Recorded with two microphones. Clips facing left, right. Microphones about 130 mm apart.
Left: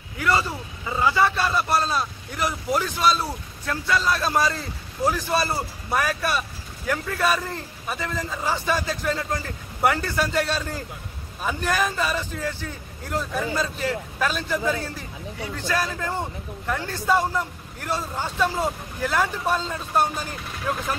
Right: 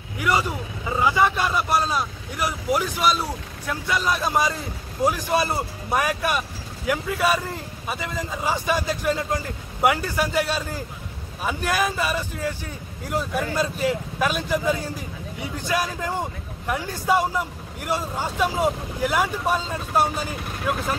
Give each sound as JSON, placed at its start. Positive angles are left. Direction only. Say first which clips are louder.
{"t": 0.2, "sound": "a man's voice", "louder": "even", "side_deg": -15}